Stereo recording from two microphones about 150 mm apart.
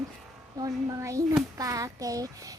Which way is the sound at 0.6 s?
20° right (ahead or behind).